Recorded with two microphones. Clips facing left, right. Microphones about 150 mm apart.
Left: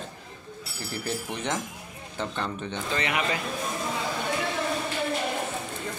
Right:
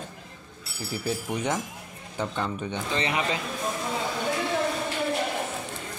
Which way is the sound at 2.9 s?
25° right (ahead or behind).